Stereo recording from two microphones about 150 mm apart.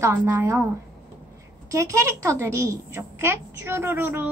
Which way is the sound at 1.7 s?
20° right (ahead or behind).